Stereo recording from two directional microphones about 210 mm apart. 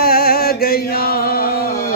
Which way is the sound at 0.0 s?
45° left (ahead or behind).